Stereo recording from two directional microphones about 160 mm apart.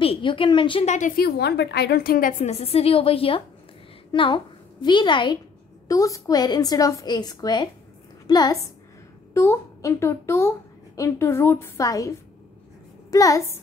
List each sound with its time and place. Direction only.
0.0 s a woman's voice: 35° left (ahead or behind)
0.8 s a woman's voice: 50° left (ahead or behind)
1.1 s a woman's voice: 80° left; by 2.5 s 60° left (ahead or behind)
2.5 s a woman's voice: 40° left (ahead or behind); by 12.1 s 20° left (ahead or behind)
13.1 s a woman's voice: 20° left (ahead or behind)